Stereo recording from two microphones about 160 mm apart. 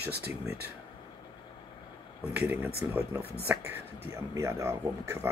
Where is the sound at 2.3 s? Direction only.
10° right (ahead or behind).